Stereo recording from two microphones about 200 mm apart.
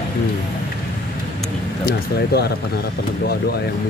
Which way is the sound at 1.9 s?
55° left (ahead or behind).